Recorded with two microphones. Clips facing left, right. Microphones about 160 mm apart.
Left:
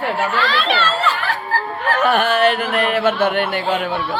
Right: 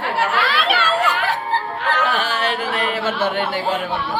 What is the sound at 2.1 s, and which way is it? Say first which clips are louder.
A man's voice: left 6 dB; 55° left (ahead or behind).